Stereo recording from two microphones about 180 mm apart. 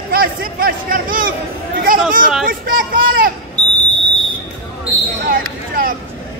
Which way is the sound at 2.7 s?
55° right (ahead or behind).